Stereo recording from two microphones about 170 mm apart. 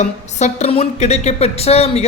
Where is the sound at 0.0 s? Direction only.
40° left (ahead or behind).